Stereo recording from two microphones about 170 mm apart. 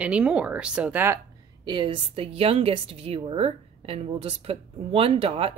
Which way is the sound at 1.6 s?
25° right (ahead or behind).